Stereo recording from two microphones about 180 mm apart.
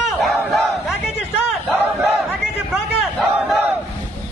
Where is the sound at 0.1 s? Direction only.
Centre (ahead or behind).